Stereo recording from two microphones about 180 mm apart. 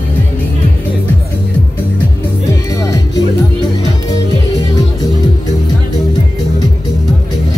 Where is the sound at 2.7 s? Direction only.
20° left (ahead or behind).